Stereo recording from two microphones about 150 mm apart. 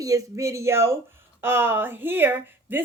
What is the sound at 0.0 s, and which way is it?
Speech, 20° right (ahead or behind).